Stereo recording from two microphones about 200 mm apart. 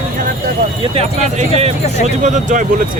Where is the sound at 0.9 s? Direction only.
30° right (ahead or behind).